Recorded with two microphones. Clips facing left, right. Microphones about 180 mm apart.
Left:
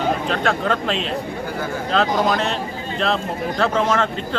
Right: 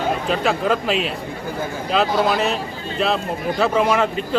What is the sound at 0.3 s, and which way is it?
Speech, 5° right (ahead or behind).